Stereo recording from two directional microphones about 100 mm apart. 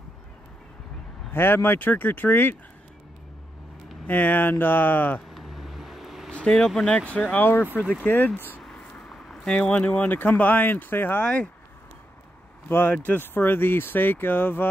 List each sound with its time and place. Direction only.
1.3 s speech: 20° left (ahead or behind)
4.1 s speech: 20° left (ahead or behind)
5.3 s vehicle: centre (ahead or behind)
6.3 s speech: 10° left (ahead or behind)
8.6 s speech: 5° left (ahead or behind)
12.6 s speech: 20° left (ahead or behind)